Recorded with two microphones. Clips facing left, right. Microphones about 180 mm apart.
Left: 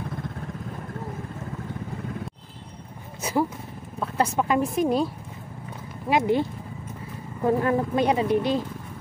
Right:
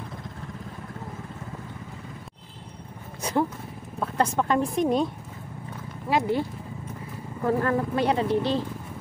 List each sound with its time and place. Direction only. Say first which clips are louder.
3.2 s a woman's voice: left 1 dB; 5° left (ahead or behind)
6.0 s speech: left 3 dB; 20° left (ahead or behind)
7.4 s speech: left 2 dB; 15° left (ahead or behind)